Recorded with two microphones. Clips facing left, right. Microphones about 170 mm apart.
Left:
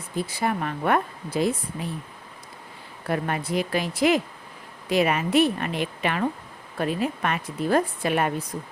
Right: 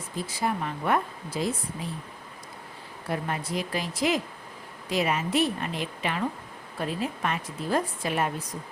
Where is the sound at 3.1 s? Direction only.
65° left (ahead or behind).